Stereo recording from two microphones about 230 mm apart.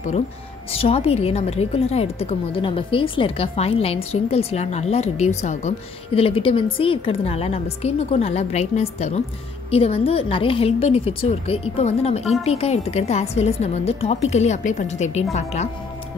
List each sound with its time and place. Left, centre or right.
0.7 s a woman's voice: left